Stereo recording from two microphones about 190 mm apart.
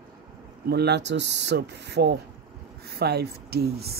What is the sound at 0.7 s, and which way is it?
Speech, 60° right (ahead or behind).